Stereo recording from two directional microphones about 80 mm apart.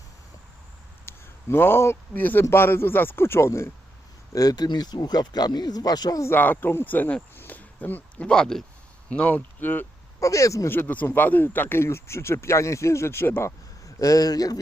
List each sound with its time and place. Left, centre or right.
1.0 s speech: left
4.3 s speech: left
6.2 s speech: left
10.2 s speech: left
10.7 s speech: left
13.8 s speech: left